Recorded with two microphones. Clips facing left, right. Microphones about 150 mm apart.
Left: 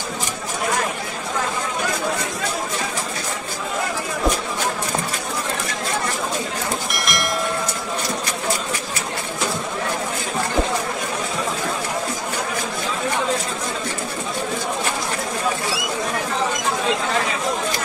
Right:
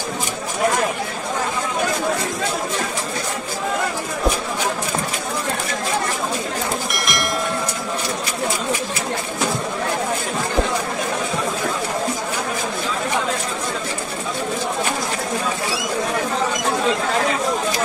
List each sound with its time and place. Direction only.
6.9 s train: centre (ahead or behind)